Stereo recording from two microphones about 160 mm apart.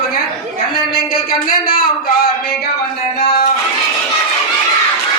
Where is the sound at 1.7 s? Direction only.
65° left (ahead or behind).